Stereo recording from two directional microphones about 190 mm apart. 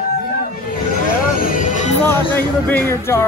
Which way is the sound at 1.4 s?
45° left (ahead or behind).